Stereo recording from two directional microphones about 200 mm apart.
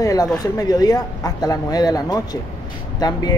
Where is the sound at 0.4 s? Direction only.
20° left (ahead or behind).